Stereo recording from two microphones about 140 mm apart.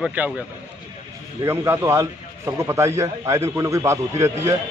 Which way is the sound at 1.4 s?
20° right (ahead or behind).